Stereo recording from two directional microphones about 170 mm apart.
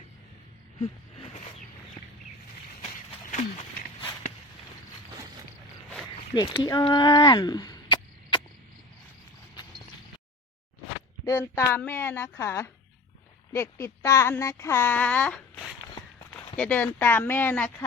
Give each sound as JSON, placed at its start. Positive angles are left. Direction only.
{"t": 0.8, "sound": "a sound", "side_deg": 35}
{"t": 6.3, "sound": "speech", "side_deg": 25}
{"t": 11.3, "sound": "speech", "side_deg": 15}